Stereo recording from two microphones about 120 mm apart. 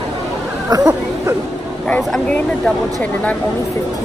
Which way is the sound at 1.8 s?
10° left (ahead or behind).